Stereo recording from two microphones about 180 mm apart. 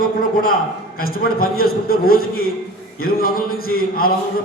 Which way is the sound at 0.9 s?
55° left (ahead or behind).